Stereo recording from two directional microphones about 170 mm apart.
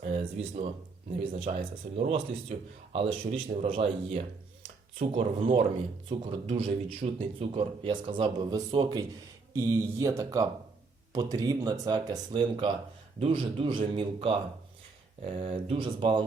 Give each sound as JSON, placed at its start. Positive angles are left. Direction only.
{"t": 0.0, "sound": "speech", "side_deg": -40}
{"t": 4.9, "sound": "speech", "side_deg": -30}